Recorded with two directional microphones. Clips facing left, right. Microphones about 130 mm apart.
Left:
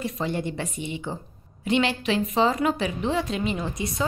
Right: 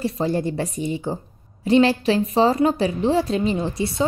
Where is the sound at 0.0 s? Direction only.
35° right (ahead or behind).